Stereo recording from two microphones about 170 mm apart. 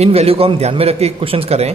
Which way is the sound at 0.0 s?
35° right (ahead or behind).